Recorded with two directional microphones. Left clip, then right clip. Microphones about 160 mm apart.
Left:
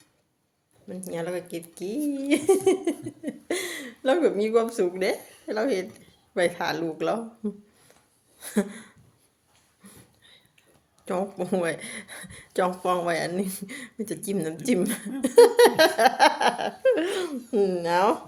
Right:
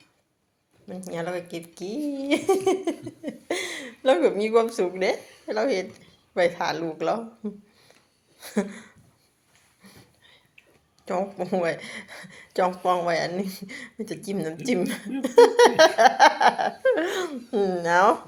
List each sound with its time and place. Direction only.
0.9 s speech: 20° left (ahead or behind)
9.8 s a sound: 30° left (ahead or behind)
11.0 s speech: 35° left (ahead or behind); by 18.2 s 15° left (ahead or behind)